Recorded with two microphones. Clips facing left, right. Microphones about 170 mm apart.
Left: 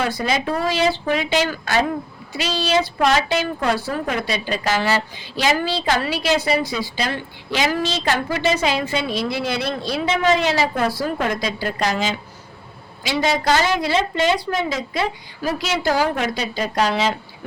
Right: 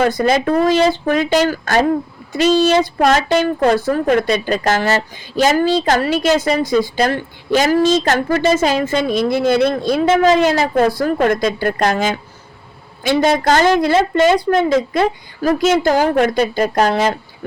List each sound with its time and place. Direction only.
0.0 s speech: 50° right (ahead or behind)